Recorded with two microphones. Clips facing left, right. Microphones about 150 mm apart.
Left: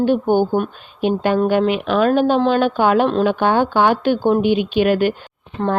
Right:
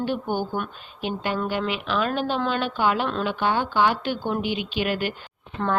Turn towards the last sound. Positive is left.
turn(degrees=25)  # may be behind; listen again after turning